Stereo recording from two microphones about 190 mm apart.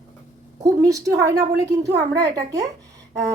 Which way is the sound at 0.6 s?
15° right (ahead or behind).